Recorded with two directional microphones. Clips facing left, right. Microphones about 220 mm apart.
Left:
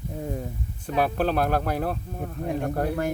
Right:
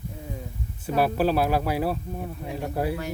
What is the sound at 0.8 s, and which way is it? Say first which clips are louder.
Speech: right 1 dB; 5° right (ahead or behind).